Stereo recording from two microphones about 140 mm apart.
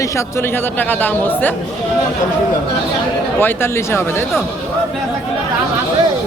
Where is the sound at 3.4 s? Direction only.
15° left (ahead or behind).